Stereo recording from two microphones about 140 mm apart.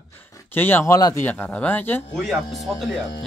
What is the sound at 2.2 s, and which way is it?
Speech, centre (ahead or behind).